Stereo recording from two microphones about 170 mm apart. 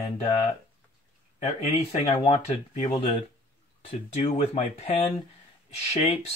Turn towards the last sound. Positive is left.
turn(degrees=35)  # may be behind; listen again after turning